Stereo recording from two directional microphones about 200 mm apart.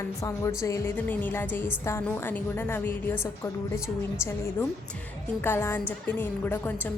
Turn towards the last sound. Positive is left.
turn(degrees=10)  # may be behind; listen again after turning